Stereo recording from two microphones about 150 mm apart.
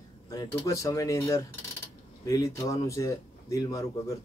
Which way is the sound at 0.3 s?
30° left (ahead or behind).